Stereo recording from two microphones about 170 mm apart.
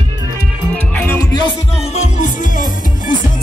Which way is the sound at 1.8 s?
40° left (ahead or behind).